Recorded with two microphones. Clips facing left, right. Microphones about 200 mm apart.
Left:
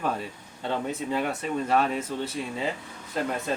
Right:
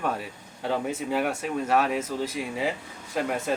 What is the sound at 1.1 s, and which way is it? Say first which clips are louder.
Speech: right 1 dB; 10° right (ahead or behind).